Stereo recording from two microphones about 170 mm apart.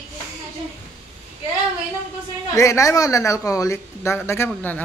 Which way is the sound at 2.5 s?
20° left (ahead or behind).